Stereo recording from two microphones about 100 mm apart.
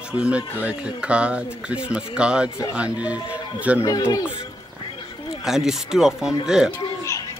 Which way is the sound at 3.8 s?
30° left (ahead or behind).